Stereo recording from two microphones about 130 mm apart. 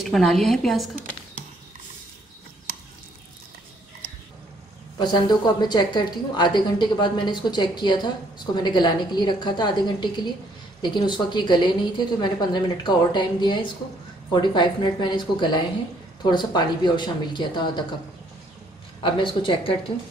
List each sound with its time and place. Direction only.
0.0 s a woman's voice: centre (ahead or behind)
4.9 s a woman's voice: 35° left (ahead or behind)
18.9 s a woman's voice: 40° left (ahead or behind)